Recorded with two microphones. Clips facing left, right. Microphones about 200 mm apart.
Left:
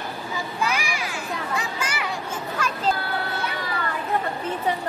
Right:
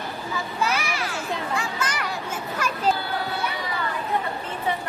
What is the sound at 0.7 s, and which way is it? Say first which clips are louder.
Children playing: right 1 dB; 15° left (ahead or behind).